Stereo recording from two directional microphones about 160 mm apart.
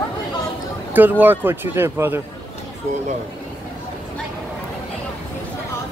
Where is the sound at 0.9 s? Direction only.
10° right (ahead or behind).